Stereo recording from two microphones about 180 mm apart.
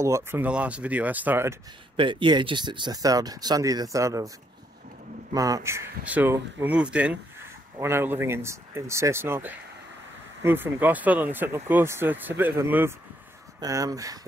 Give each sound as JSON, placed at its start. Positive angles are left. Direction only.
{"t": 0.0, "sound": "speech", "side_deg": -15}
{"t": 2.0, "sound": "speech", "side_deg": -25}
{"t": 5.3, "sound": "speech", "side_deg": -20}